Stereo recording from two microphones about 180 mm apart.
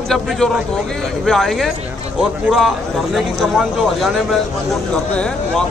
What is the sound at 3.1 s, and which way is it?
Speech, centre (ahead or behind).